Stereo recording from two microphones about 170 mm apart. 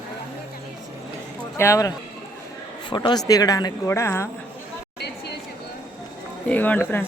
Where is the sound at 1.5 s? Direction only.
15° left (ahead or behind).